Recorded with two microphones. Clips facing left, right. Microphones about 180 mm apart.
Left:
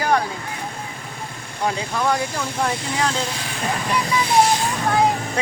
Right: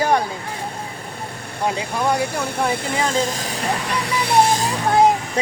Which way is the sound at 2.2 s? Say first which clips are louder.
Right 2 dB; 60° right (ahead or behind).